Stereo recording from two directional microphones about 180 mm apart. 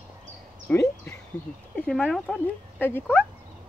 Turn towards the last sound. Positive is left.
turn(degrees=10)  # may be behind; listen again after turning